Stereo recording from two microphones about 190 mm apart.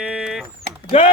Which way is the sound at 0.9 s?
30° left (ahead or behind).